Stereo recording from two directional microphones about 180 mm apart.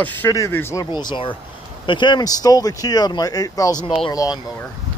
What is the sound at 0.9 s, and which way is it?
Speech, 25° left (ahead or behind).